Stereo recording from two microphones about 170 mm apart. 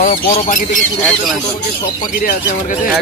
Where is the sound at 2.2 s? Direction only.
50° left (ahead or behind).